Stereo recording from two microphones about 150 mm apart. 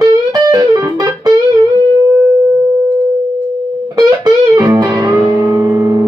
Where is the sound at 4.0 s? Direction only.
25° right (ahead or behind).